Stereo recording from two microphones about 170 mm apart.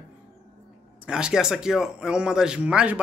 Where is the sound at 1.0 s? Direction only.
5° right (ahead or behind).